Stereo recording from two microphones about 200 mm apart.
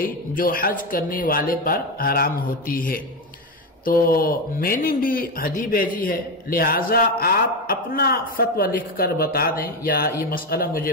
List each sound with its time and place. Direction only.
0.0 s speech: 45° left (ahead or behind)